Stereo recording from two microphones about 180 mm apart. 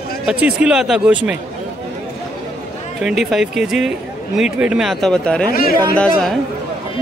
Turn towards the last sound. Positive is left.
turn(degrees=5)  # may be behind; listen again after turning